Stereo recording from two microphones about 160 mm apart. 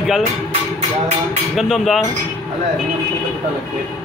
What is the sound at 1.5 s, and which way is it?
Speech, centre (ahead or behind).